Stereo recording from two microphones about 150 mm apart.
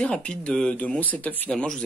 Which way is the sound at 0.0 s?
5° left (ahead or behind).